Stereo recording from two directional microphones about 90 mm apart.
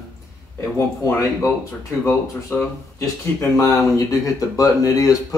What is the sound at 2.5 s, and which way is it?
Speech, 25° left (ahead or behind).